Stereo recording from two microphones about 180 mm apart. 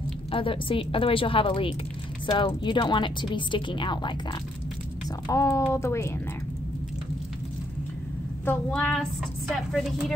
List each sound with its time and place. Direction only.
0.3 s a woman's voice: 30° left (ahead or behind)
8.5 s speech: 5° left (ahead or behind)